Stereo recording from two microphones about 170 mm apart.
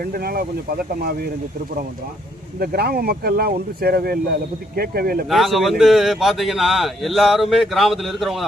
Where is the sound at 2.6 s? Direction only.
65° right (ahead or behind).